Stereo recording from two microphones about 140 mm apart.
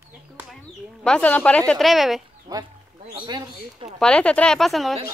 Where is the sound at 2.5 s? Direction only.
30° right (ahead or behind).